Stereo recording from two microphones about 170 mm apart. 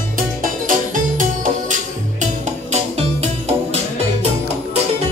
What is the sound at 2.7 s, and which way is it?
Music, 40° right (ahead or behind).